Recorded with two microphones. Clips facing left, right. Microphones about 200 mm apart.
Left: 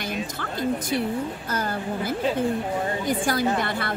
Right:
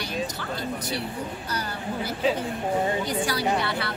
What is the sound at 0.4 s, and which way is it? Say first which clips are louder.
Speech: left 5 dB; 50° left (ahead or behind).